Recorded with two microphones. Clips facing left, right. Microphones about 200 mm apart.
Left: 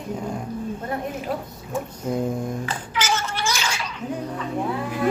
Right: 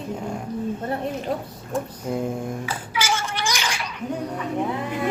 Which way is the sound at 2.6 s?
10° right (ahead or behind).